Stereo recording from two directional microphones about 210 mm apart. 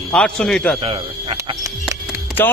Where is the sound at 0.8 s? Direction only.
25° right (ahead or behind).